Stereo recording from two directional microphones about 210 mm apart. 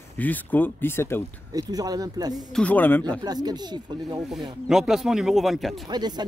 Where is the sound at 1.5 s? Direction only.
15° right (ahead or behind).